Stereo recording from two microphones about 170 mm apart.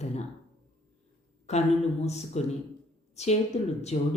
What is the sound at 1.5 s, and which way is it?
Speech, 40° left (ahead or behind).